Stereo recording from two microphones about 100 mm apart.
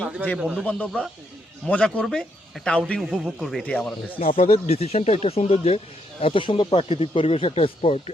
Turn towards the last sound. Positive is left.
turn(degrees=85)